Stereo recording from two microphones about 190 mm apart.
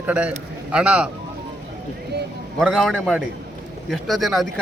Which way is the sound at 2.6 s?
Centre (ahead or behind).